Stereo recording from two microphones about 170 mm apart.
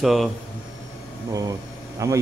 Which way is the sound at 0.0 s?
Centre (ahead or behind).